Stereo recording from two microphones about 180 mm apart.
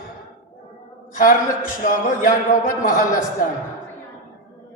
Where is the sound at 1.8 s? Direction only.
50° left (ahead or behind).